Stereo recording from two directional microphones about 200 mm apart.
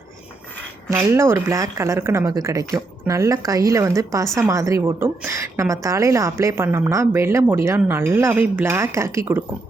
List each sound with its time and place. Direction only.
0.9 s a woman's voice: 15° right (ahead or behind)